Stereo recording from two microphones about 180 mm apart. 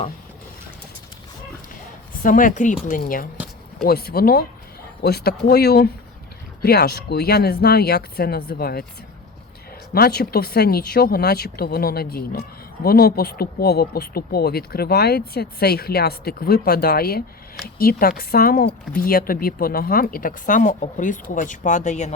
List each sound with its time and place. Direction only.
2.2 s speech: 50° left (ahead or behind)
9.9 s speech: 60° left (ahead or behind); by 22.1 s 40° left (ahead or behind)